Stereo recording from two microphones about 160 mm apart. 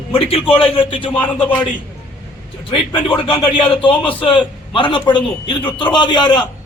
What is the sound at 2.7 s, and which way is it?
A man's voice, 35° left (ahead or behind).